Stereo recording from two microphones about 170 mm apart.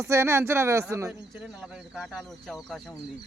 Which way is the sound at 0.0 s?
15° right (ahead or behind).